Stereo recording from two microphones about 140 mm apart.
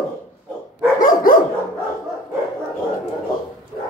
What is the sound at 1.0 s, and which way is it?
Dog, 80° left.